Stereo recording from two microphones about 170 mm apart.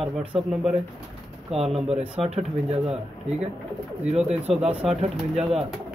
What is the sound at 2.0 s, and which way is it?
Speech, 5° right (ahead or behind).